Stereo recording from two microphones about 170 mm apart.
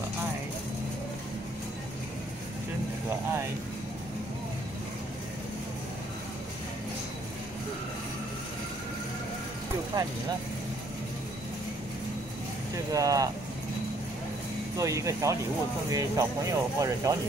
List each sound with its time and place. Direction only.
9.9 s speech: 25° right (ahead or behind)
12.7 s speech: 20° right (ahead or behind)
14.8 s speech: 20° right (ahead or behind)